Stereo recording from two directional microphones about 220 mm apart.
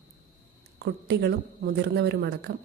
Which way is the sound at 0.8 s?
50° right (ahead or behind).